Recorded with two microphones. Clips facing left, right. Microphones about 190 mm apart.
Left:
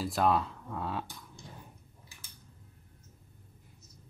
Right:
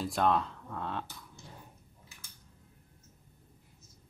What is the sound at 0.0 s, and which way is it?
Speech, 5° left (ahead or behind).